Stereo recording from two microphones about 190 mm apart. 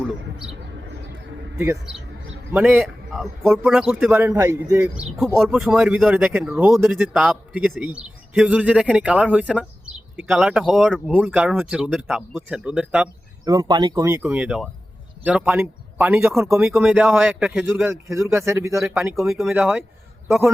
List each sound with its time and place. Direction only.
1.5 s speech: 15° right (ahead or behind)
5.5 s a man's voice: centre (ahead or behind)
13.4 s speech: 20° right (ahead or behind); by 17.8 s centre (ahead or behind)
17.8 s a man's voice: 15° right (ahead or behind)